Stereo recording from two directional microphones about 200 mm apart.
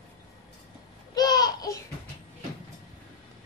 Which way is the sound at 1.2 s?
20° left (ahead or behind).